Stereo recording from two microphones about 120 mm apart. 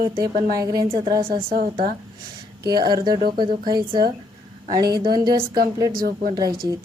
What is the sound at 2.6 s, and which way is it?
A woman's voice, 35° right (ahead or behind).